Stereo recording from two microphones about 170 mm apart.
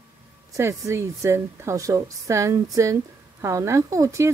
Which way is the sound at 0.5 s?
15° right (ahead or behind).